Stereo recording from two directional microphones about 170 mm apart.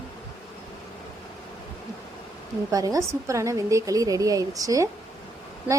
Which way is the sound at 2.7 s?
20° right (ahead or behind).